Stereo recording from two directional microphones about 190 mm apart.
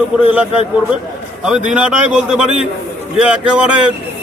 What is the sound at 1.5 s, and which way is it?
A man's voice, 5° right (ahead or behind).